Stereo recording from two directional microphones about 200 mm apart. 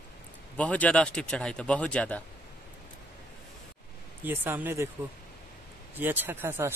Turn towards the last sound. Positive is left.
turn(degrees=-10)  # may be behind; listen again after turning